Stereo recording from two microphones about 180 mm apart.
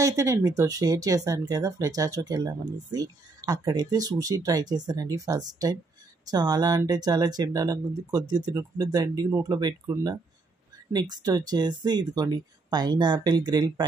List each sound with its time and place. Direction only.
0.0 s speech: 15° right (ahead or behind)